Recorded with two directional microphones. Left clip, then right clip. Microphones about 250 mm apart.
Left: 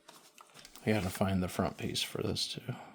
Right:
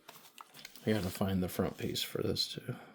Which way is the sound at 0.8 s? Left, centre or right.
Left.